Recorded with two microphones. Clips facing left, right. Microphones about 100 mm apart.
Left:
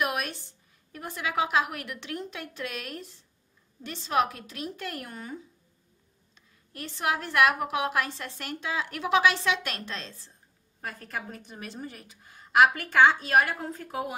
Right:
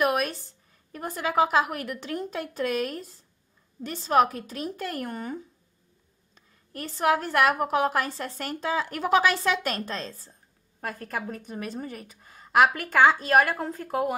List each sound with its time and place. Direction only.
0.0 s a sound: 40° right (ahead or behind)
0.9 s a woman's voice: 40° right (ahead or behind)
6.7 s a woman's voice: 45° right (ahead or behind)